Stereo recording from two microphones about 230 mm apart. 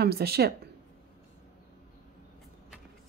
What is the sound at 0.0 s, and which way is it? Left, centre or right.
Speech, right.